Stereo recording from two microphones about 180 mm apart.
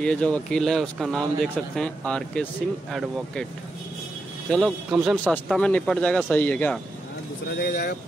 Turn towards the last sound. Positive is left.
turn(degrees=65)  # may be behind; listen again after turning